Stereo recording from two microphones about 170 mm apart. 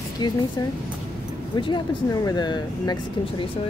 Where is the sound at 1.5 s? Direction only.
25° left (ahead or behind).